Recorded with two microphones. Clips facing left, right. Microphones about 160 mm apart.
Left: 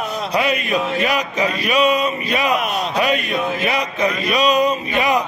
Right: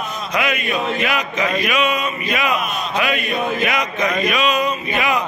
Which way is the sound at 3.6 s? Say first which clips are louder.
Left 1 dB; 35° left (ahead or behind).